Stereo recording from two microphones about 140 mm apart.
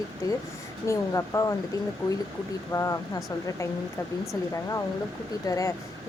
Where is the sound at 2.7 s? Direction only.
20° left (ahead or behind).